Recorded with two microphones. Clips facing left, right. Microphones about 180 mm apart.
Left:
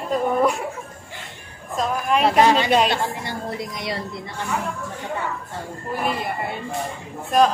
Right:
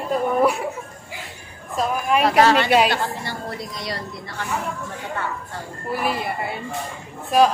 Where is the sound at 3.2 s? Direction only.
20° left (ahead or behind).